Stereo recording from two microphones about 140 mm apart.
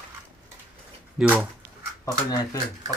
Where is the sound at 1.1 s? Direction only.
10° right (ahead or behind).